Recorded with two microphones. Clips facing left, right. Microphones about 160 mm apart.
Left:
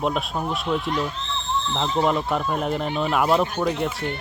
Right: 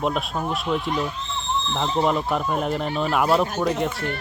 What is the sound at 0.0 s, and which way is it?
Speech, centre (ahead or behind).